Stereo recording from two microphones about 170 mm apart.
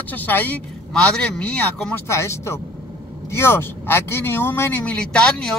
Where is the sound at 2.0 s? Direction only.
15° left (ahead or behind).